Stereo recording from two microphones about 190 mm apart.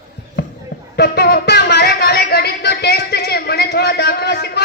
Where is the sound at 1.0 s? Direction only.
60° left (ahead or behind).